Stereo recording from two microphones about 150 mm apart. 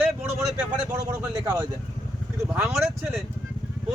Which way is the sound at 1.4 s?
25° right (ahead or behind).